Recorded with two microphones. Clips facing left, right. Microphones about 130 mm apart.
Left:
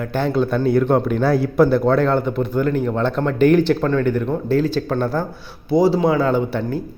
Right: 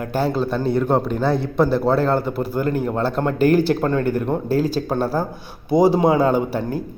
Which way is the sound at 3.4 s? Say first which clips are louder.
Left 2 dB; 40° right (ahead or behind).